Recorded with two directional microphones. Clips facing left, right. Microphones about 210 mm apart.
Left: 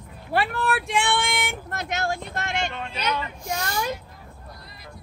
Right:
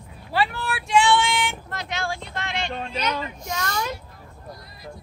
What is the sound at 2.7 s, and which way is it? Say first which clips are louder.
Speech: right 1 dB; 35° right (ahead or behind).